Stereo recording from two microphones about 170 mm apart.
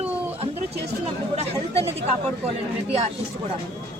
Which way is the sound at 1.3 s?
35° right (ahead or behind).